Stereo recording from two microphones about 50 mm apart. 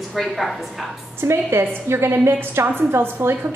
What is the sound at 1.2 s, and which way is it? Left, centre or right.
A woman's voice, right.